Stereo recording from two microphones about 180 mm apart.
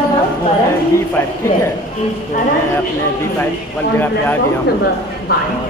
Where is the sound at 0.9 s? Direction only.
15° left (ahead or behind).